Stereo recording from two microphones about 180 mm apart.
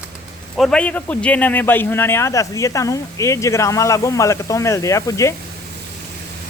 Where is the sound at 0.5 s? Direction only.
5° left (ahead or behind).